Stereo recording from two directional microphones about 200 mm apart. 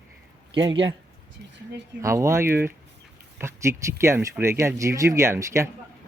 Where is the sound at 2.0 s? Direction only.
15° right (ahead or behind).